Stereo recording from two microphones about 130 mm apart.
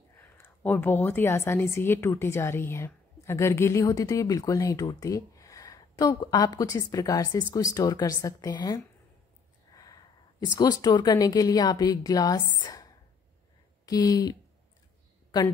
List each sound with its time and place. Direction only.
0.2 s a woman's voice: 15° left (ahead or behind)